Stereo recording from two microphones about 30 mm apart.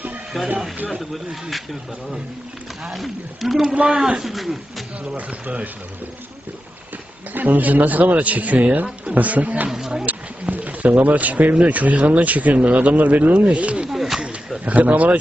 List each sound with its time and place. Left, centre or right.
0.4 s speech: centre
3.4 s speech: centre
3.8 s speech: right
4.2 s speech: centre
5.1 s speech: right
7.3 s speech: right
9.6 s speech: centre
10.1 s a sound: right
11.6 s speech: right
13.3 s speech: right
13.9 s a sound: centre
14.6 s speech: right